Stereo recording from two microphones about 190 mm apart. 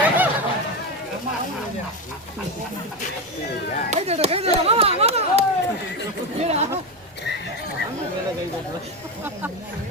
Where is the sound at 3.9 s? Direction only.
35° right (ahead or behind).